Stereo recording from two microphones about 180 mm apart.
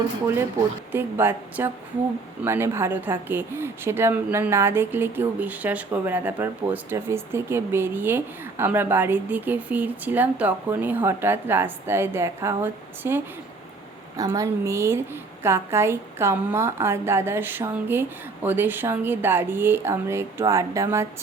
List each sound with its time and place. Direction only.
0.9 s speech: 10° right (ahead or behind)